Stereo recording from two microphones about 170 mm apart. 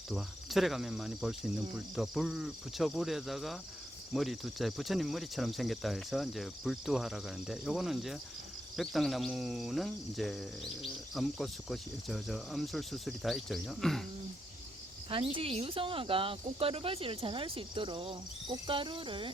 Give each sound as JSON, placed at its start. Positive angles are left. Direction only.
{"t": 0.1, "sound": "speech", "side_deg": 0}
{"t": 15.1, "sound": "speech", "side_deg": -30}